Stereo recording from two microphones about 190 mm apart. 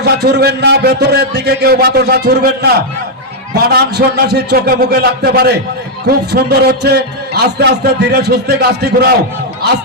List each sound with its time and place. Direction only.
0.0 s a man's voice: 60° right (ahead or behind)
3.7 s a man's voice: 60° right (ahead or behind)